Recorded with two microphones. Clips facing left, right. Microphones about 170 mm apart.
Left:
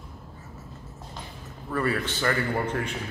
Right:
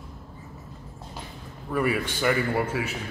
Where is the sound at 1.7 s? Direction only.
10° right (ahead or behind).